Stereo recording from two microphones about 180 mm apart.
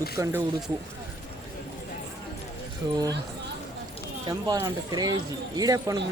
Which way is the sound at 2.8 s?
25° right (ahead or behind).